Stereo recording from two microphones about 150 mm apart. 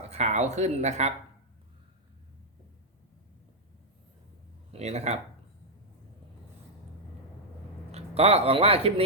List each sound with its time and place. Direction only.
0.1 s speech: 50° right (ahead or behind)
4.7 s speech: 45° right (ahead or behind)
7.9 s speech: 45° right (ahead or behind)